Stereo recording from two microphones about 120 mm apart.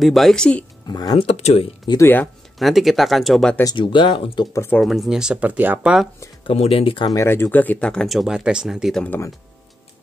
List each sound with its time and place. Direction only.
0.0 s speech: centre (ahead or behind)
0.8 s speech: 35° left (ahead or behind)
1.1 s speech: 65° left (ahead or behind)
2.0 s speech: 15° left (ahead or behind)
2.6 s speech: centre (ahead or behind)
3.7 s speech: 45° left (ahead or behind)
4.7 s speech: centre (ahead or behind)
6.4 s speech: 55° left (ahead or behind)
7.1 s speech: 25° left (ahead or behind); by 9.0 s centre (ahead or behind)